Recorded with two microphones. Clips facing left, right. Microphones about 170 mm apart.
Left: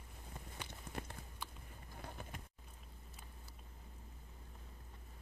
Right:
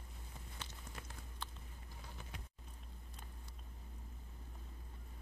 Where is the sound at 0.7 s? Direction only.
55° left (ahead or behind).